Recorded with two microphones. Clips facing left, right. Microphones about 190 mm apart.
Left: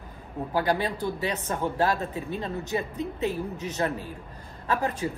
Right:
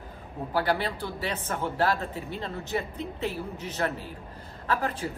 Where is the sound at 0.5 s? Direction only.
15° left (ahead or behind).